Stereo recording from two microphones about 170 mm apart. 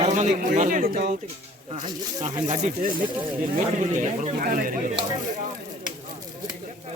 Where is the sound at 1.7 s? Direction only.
40° right (ahead or behind).